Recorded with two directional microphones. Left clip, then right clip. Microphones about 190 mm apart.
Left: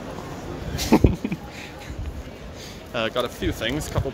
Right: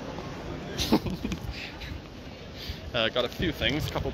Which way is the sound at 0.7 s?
30° left (ahead or behind).